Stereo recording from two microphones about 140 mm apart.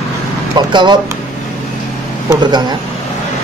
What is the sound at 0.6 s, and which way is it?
Speech, 30° right (ahead or behind).